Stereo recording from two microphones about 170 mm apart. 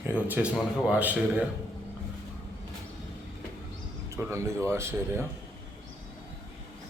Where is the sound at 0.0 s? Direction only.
10° right (ahead or behind).